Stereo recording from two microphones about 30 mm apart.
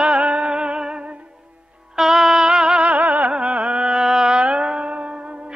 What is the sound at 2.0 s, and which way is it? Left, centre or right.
Music, centre.